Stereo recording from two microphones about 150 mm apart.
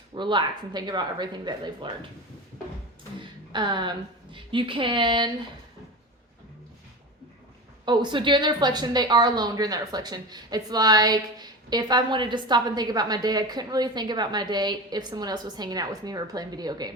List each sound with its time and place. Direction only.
0.1 s a woman's voice: 30° right (ahead or behind)
3.5 s a woman's voice: 30° right (ahead or behind)
7.9 s a woman's voice: 30° right (ahead or behind)